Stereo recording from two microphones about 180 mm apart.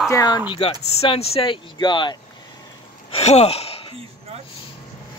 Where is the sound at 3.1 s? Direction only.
35° left (ahead or behind).